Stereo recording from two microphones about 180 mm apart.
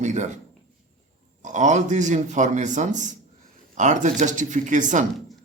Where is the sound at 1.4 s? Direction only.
40° right (ahead or behind).